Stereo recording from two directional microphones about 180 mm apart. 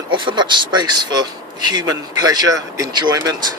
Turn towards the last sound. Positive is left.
turn(degrees=-20)  # may be behind; listen again after turning